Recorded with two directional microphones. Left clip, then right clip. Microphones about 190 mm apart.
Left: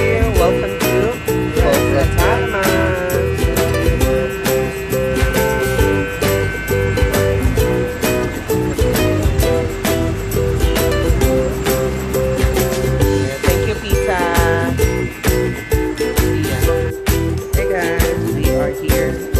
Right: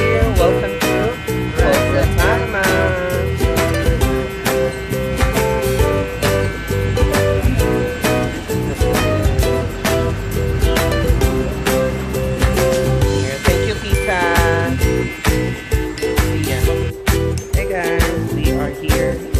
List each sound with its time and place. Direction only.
0.0 s music: centre (ahead or behind)
5.4 s music: centre (ahead or behind)
10.8 s music: centre (ahead or behind)
14.0 s music: 15° right (ahead or behind)
17.7 s music: centre (ahead or behind)